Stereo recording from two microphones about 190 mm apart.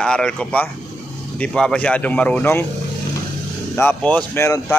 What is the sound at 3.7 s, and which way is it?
Speech, 10° left (ahead or behind).